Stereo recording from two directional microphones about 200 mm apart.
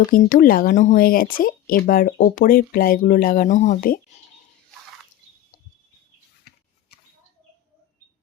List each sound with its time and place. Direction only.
0.1 s speech: 45° left (ahead or behind)
6.5 s scissors: 50° left (ahead or behind)